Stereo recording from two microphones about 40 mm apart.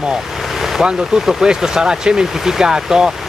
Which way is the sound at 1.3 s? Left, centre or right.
Centre.